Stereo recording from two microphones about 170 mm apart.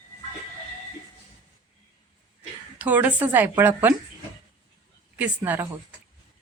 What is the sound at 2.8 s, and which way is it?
A woman's voice, 10° right (ahead or behind).